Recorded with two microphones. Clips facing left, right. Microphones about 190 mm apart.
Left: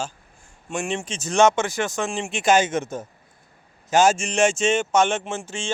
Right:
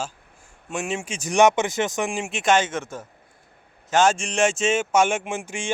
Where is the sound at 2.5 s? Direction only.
15° left (ahead or behind).